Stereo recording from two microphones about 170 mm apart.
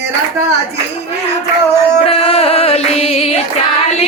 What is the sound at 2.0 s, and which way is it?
Music, 35° left (ahead or behind).